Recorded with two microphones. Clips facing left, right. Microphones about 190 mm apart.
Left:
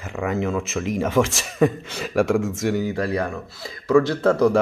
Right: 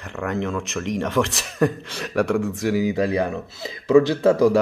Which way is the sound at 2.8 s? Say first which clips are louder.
Right 3 dB; 15° right (ahead or behind).